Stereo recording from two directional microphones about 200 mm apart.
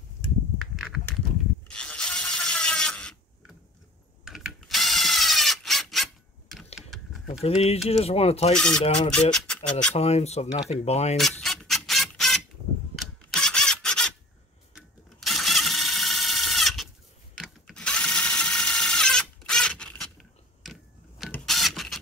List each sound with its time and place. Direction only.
0.6 s coin: centre (ahead or behind)
1.7 s mechanisms: 5° left (ahead or behind)
4.2 s ratchet: centre (ahead or behind)
6.5 s a sound: centre (ahead or behind)
7.4 s speech: 30° left (ahead or behind)
8.5 s speech: 5° left (ahead or behind)
9.3 s a sound: 5° left (ahead or behind)
9.7 s speech: 5° left (ahead or behind)
9.9 s speech: 30° left (ahead or behind)
11.1 s a sound: centre (ahead or behind)
14.7 s mechanisms: centre (ahead or behind)
17.4 s ratchet: centre (ahead or behind)
21.3 s printer: centre (ahead or behind)